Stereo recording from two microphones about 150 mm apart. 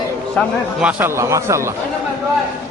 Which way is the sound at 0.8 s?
10° right (ahead or behind).